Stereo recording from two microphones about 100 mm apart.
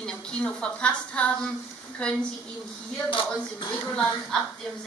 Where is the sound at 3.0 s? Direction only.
60° left (ahead or behind).